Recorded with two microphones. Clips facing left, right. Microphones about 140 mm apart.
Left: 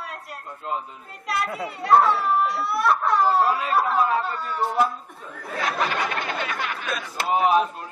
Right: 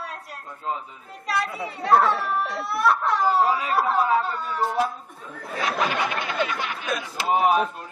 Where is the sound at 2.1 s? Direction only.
55° right (ahead or behind).